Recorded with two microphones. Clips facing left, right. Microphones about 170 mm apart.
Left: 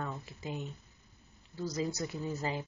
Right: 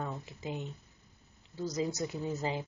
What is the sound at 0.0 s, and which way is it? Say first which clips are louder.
Speech: right 1 dB; 15° right (ahead or behind).